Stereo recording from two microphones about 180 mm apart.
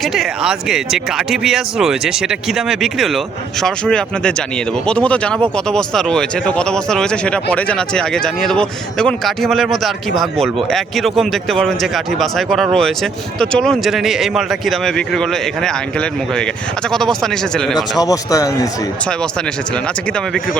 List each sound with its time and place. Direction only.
0.0 s a man's voice: centre (ahead or behind)
18.0 s speech: 20° left (ahead or behind)